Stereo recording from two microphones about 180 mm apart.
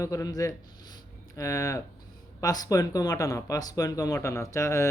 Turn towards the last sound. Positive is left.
turn(degrees=15)  # may be behind; listen again after turning